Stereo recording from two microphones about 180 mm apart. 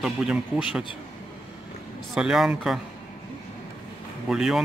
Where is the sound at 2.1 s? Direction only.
5° right (ahead or behind).